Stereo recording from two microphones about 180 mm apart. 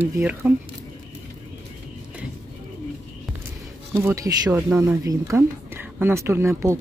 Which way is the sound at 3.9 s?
15° right (ahead or behind).